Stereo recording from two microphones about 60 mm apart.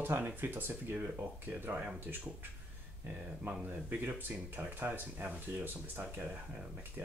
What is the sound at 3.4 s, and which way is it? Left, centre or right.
Speech, right.